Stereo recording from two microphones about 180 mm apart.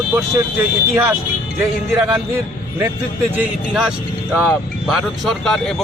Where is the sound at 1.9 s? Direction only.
15° right (ahead or behind).